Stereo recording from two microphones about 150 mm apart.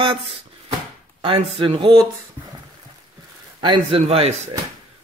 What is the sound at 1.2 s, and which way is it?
Speech, 35° right (ahead or behind).